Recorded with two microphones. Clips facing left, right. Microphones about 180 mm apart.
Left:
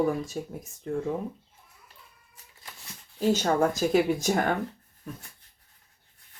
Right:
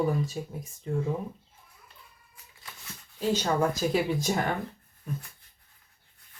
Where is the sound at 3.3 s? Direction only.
45° left (ahead or behind).